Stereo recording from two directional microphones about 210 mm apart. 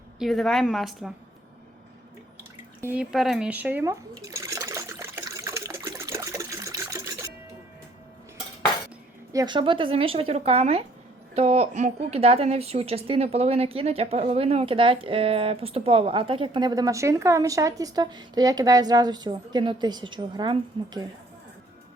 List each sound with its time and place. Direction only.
0.2 s a woman's voice: centre (ahead or behind)
2.8 s speech: 5° right (ahead or behind)
4.3 s water: 15° right (ahead or behind)
9.3 s a woman's voice: 20° right (ahead or behind)